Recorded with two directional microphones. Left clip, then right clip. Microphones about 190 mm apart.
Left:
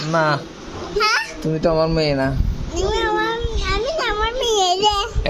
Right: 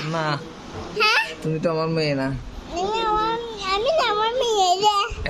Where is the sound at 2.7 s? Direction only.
10° right (ahead or behind); by 4.3 s 25° right (ahead or behind).